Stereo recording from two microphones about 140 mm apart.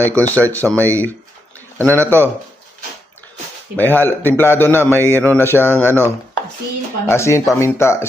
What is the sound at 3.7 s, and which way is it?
Speech, 15° left (ahead or behind).